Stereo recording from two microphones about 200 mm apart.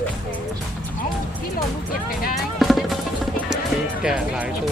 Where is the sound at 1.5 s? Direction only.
45° left (ahead or behind).